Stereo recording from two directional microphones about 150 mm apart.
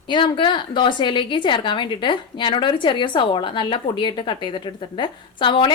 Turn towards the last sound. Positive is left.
turn(degrees=35)  # may be behind; listen again after turning